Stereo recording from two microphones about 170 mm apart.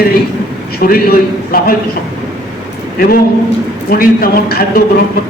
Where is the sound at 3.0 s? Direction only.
60° left (ahead or behind).